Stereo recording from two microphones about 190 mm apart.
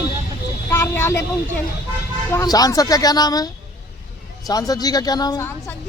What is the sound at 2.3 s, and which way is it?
A woman's voice, 20° left (ahead or behind).